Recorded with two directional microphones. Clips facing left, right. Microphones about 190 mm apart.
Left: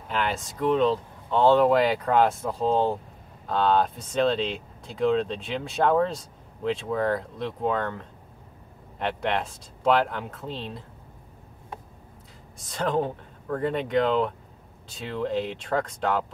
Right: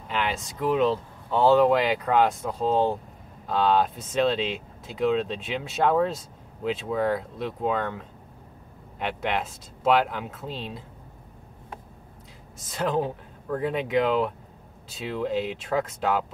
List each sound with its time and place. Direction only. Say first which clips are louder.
0.1 s speech: left 1 dB; centre (ahead or behind)
12.5 s speech: even; centre (ahead or behind)